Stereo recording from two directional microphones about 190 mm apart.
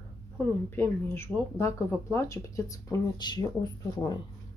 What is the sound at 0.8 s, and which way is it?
A woman's voice, 10° left (ahead or behind).